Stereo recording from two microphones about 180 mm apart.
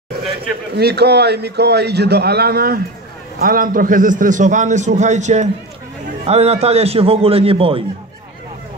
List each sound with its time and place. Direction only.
0.7 s a man's voice: 65° right (ahead or behind); by 7.8 s 30° right (ahead or behind)